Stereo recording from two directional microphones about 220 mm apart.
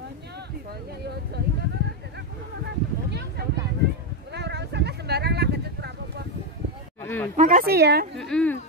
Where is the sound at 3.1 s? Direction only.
50° right (ahead or behind).